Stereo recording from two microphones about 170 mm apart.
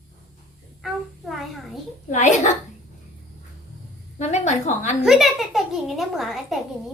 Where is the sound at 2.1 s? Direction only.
45° left (ahead or behind).